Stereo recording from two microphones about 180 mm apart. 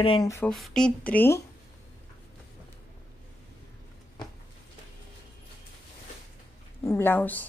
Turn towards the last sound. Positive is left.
turn(degrees=10)  # may be behind; listen again after turning